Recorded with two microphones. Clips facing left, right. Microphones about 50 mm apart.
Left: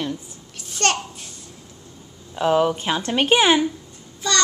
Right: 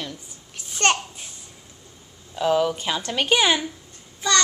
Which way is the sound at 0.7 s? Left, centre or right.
Centre.